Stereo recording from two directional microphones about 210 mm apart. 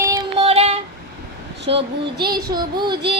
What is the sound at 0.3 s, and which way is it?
Child singing, 30° right (ahead or behind).